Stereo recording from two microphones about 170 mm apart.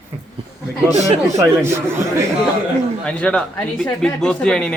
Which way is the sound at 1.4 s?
15° right (ahead or behind).